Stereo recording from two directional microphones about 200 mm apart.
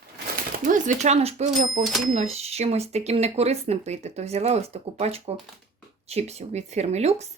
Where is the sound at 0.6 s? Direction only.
40° right (ahead or behind).